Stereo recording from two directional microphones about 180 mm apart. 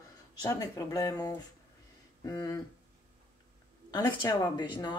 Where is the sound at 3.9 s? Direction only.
25° left (ahead or behind).